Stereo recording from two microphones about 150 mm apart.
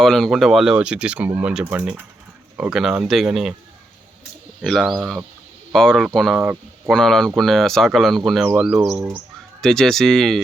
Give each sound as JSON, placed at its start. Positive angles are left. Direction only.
{"t": 0.0, "sound": "speech", "side_deg": 0}
{"t": 4.6, "sound": "speech", "side_deg": 0}
{"t": 6.4, "sound": "speech", "side_deg": -10}
{"t": 6.9, "sound": "speech", "side_deg": 5}
{"t": 8.9, "sound": "speech", "side_deg": -20}
{"t": 9.6, "sound": "speech", "side_deg": 5}